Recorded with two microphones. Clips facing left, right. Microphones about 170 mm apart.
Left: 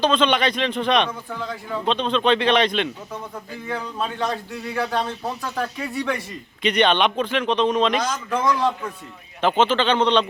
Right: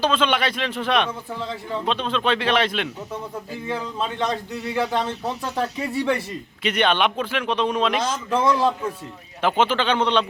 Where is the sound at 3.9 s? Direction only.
20° right (ahead or behind).